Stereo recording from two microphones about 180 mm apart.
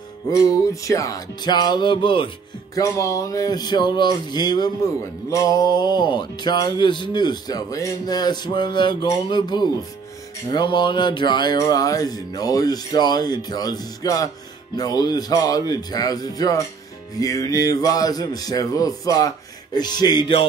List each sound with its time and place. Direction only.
0.3 s music: 20° left (ahead or behind)